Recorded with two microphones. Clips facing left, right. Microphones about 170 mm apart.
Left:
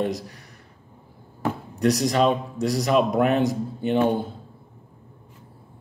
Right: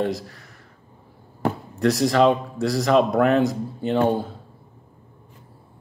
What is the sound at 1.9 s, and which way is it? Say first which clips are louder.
Speech: right 2 dB; 20° left (ahead or behind).